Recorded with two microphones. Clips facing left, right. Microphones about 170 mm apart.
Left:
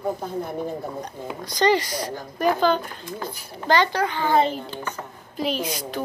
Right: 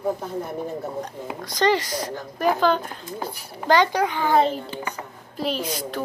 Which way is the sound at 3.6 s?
10° right (ahead or behind).